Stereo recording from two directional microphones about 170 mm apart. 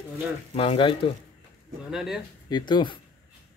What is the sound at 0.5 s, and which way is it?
Speech, 30° left (ahead or behind).